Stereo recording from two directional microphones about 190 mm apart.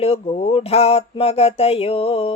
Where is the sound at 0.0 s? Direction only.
30° left (ahead or behind).